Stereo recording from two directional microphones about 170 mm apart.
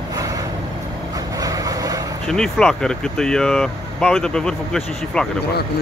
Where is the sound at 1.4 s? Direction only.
20° right (ahead or behind).